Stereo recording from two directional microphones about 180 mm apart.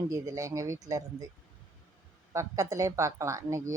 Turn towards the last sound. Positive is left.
turn(degrees=-15)  # may be behind; listen again after turning